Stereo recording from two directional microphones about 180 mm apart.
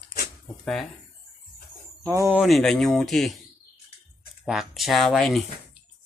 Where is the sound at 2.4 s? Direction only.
Centre (ahead or behind).